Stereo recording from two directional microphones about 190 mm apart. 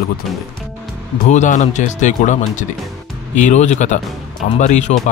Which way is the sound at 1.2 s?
40° left (ahead or behind).